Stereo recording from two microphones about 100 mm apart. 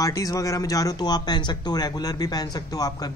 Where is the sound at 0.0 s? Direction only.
35° left (ahead or behind).